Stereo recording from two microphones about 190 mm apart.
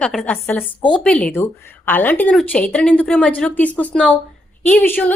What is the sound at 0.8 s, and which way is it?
Speech, 25° left (ahead or behind).